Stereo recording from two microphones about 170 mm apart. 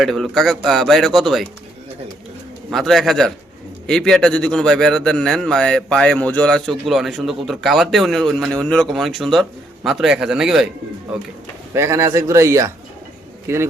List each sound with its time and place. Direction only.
0.0 s a man's voice: centre (ahead or behind)
2.6 s a man's voice: centre (ahead or behind)
11.7 s a man's voice: 15° right (ahead or behind)